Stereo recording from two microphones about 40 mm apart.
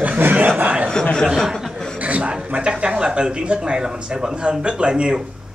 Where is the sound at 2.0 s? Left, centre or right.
Right.